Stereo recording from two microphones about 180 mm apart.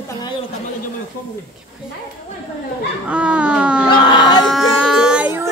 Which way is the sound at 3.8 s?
25° left (ahead or behind).